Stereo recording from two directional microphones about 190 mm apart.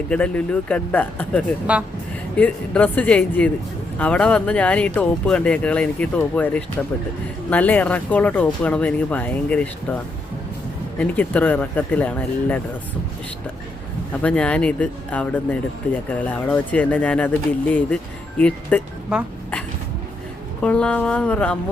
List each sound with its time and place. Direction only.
0.1 s speech: 5° left (ahead or behind)
1.7 s a woman's voice: 5° right (ahead or behind)
2.3 s speech: 5° left (ahead or behind)
11.0 s speech: 10° left (ahead or behind)
14.1 s speech: 5° left (ahead or behind)
20.6 s speech: 5° left (ahead or behind)